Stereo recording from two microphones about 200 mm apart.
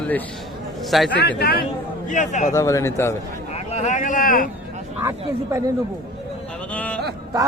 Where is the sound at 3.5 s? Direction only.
35° left (ahead or behind).